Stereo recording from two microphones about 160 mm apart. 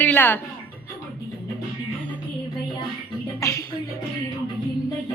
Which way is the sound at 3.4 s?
20° left (ahead or behind).